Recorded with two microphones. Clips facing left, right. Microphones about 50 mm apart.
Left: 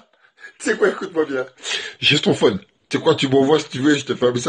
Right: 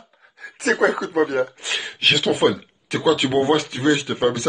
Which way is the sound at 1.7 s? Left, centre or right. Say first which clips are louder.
Left 1 dB; centre.